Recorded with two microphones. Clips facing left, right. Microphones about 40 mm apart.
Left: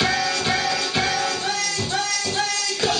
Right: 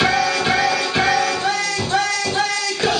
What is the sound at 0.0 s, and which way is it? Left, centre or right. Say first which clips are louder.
Music: right 4 dB; centre.